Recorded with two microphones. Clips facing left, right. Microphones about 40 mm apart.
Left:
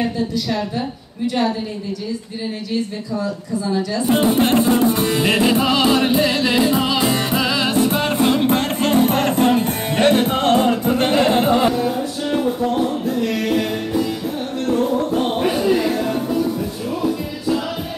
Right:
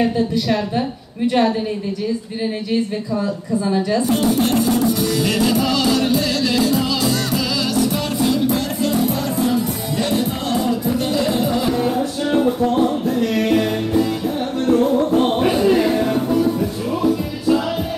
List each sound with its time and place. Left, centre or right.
0.7 s a woman's voice: right
3.6 s a woman's voice: right
4.1 s music: left
11.8 s music: centre
15.8 s music: right